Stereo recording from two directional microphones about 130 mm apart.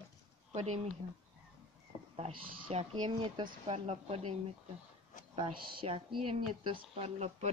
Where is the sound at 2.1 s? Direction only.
50° right (ahead or behind).